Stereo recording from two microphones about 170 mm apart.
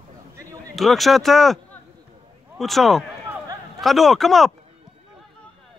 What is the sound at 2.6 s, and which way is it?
Speech, centre (ahead or behind).